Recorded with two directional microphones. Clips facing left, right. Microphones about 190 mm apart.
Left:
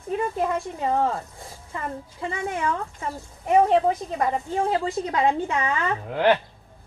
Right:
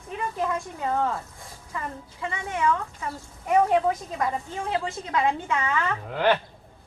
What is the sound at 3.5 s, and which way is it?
A woman's voice, 25° left (ahead or behind).